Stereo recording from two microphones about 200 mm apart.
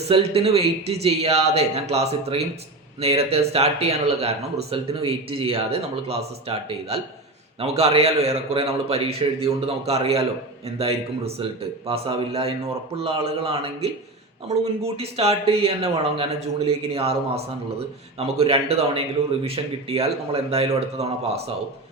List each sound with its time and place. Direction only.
0.0 s speech: 30° right (ahead or behind)